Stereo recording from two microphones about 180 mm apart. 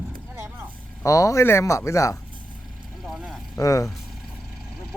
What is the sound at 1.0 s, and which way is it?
Speech, 15° left (ahead or behind).